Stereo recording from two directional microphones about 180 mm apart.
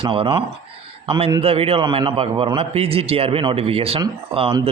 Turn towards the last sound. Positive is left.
turn(degrees=-30)  # may be behind; listen again after turning